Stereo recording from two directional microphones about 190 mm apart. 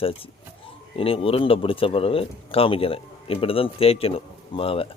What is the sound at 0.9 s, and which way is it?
A man's voice, 30° left (ahead or behind).